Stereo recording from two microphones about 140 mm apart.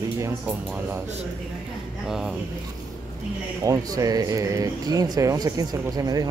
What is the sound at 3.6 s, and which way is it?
Speech, 25° right (ahead or behind).